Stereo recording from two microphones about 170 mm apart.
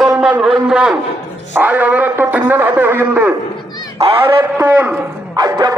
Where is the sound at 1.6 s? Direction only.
10° right (ahead or behind).